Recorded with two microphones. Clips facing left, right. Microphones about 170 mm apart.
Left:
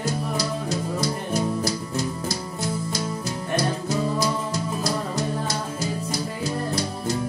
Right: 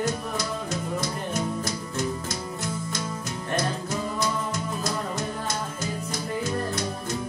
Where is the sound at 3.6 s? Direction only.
35° left (ahead or behind).